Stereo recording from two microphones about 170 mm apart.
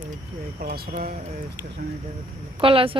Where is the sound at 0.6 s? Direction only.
65° right (ahead or behind).